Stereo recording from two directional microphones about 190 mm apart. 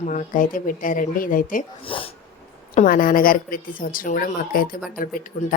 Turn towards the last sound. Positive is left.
turn(degrees=50)  # may be behind; listen again after turning